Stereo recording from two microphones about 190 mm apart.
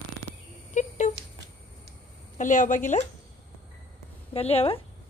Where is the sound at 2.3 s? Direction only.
40° left (ahead or behind).